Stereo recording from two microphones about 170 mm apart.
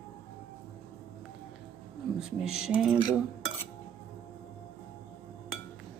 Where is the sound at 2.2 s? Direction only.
5° right (ahead or behind).